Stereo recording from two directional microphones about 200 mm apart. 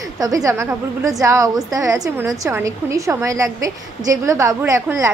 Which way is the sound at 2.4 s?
15° right (ahead or behind).